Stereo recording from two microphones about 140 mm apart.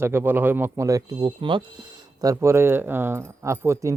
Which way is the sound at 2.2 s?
25° right (ahead or behind).